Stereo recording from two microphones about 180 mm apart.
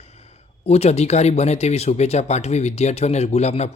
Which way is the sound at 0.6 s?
35° left (ahead or behind).